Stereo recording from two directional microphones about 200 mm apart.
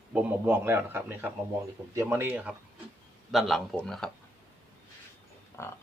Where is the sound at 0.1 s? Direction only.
5° right (ahead or behind).